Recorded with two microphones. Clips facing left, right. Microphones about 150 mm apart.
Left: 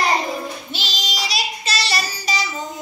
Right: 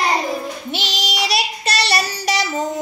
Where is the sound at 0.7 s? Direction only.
70° right (ahead or behind).